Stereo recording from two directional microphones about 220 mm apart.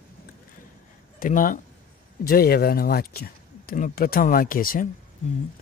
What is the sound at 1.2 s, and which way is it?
Speech, 40° left (ahead or behind).